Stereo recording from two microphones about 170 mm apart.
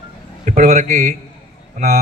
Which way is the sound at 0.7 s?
45° right (ahead or behind).